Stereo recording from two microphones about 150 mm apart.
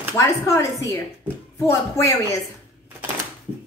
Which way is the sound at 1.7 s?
20° left (ahead or behind).